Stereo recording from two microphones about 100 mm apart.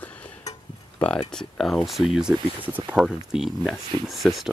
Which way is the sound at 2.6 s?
20° right (ahead or behind).